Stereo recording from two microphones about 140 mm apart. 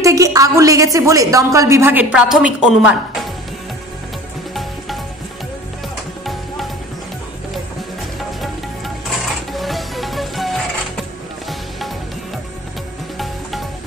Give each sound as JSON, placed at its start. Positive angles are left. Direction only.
{"t": 0.0, "sound": "a woman's voice", "side_deg": -25}
{"t": 8.2, "sound": "music", "side_deg": 0}
{"t": 13.2, "sound": "music", "side_deg": 0}